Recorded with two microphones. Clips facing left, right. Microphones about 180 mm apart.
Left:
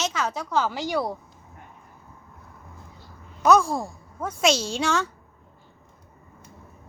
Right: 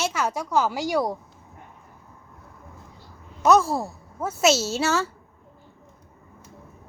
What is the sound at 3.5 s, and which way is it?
Speech, 5° right (ahead or behind).